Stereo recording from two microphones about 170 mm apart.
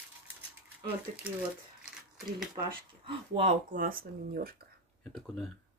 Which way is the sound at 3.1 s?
40° right (ahead or behind).